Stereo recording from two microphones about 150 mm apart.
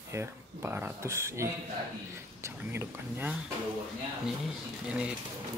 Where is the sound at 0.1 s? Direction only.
15° right (ahead or behind).